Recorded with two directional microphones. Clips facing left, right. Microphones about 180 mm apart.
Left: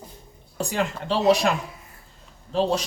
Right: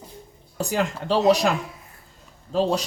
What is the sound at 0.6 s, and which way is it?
Speech, 40° right (ahead or behind).